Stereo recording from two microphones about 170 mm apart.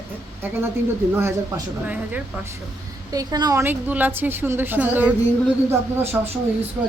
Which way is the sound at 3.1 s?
20° right (ahead or behind).